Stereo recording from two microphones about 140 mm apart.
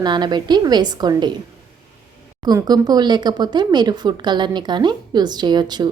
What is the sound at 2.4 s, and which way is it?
Speech, 30° right (ahead or behind).